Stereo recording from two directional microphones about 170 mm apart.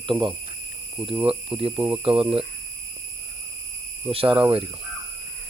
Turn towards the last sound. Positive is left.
turn(degrees=-30)  # may be behind; listen again after turning